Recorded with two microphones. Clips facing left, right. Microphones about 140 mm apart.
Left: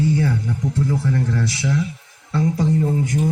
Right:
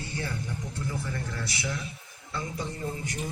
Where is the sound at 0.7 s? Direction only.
90° left.